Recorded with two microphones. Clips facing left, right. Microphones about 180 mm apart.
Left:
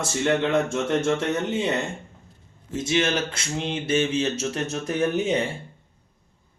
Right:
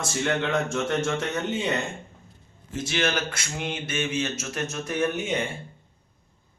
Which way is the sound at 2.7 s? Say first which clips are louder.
Left 3 dB; 20° left (ahead or behind).